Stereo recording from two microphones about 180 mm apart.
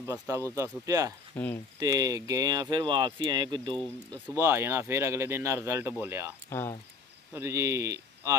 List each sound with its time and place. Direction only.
0.0 s speech: 15° right (ahead or behind)
1.3 s speech: 10° left (ahead or behind)
1.8 s speech: 20° right (ahead or behind)
4.1 s speech: 15° right (ahead or behind)
7.3 s speech: 15° right (ahead or behind)